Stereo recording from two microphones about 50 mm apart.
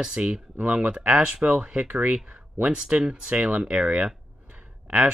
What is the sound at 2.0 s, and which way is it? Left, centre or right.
Speech, right.